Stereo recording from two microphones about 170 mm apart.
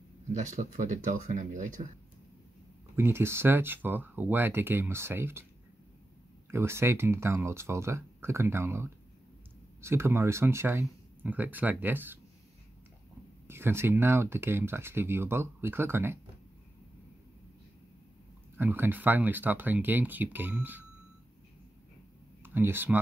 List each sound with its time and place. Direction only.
0.3 s speech: 45° right (ahead or behind)
3.0 s speech: 15° right (ahead or behind)
6.5 s speech: 15° right (ahead or behind)
13.5 s speech: 15° right (ahead or behind)
18.6 s speech: 10° right (ahead or behind)
22.4 s speech: 15° right (ahead or behind)